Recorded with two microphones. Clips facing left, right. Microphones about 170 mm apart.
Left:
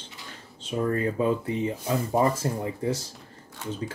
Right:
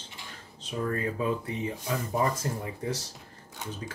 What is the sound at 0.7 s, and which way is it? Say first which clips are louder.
Speech: left 5 dB; 30° left (ahead or behind).